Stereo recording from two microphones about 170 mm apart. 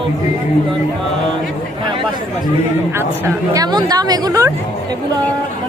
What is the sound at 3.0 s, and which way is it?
Speech, 20° right (ahead or behind).